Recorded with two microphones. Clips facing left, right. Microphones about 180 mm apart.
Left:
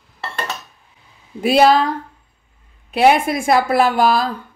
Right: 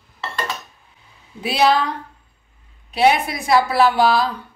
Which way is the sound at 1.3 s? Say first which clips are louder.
Left 5 dB; 50° left (ahead or behind).